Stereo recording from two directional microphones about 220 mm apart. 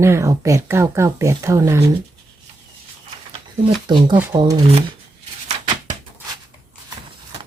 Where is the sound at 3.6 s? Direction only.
20° right (ahead or behind).